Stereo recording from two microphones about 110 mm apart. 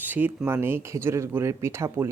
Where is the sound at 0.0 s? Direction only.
15° right (ahead or behind).